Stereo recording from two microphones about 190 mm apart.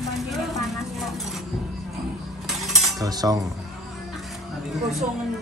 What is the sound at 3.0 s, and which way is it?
Cutlery, 20° right (ahead or behind).